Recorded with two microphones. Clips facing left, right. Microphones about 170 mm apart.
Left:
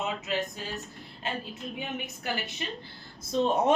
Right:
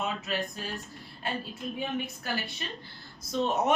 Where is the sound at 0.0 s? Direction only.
20° left (ahead or behind).